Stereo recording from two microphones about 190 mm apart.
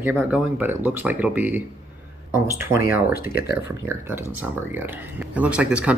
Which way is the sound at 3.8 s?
10° right (ahead or behind).